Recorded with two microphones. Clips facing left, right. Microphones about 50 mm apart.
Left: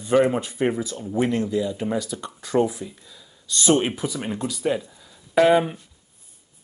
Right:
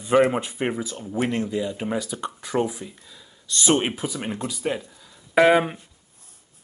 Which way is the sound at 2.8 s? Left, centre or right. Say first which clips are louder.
Left 2 dB; centre.